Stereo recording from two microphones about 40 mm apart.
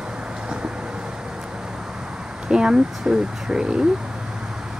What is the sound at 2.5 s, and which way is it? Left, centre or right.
Speech, centre.